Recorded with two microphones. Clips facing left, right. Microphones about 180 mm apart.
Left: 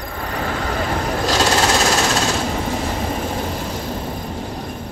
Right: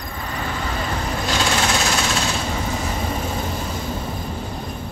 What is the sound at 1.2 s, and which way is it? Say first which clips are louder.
Sewing machine: left 4 dB; 40° left (ahead or behind).